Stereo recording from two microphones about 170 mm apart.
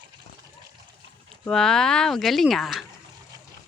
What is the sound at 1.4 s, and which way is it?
Speech, 5° left (ahead or behind).